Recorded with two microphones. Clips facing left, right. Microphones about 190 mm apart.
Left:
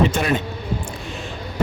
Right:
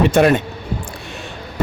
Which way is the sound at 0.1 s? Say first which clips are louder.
Right 9 dB; 65° right (ahead or behind).